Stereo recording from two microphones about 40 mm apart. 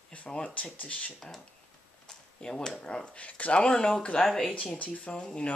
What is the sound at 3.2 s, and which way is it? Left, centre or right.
Speech, left.